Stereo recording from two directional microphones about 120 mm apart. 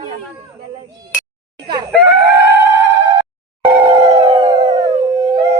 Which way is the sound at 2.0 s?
15° right (ahead or behind).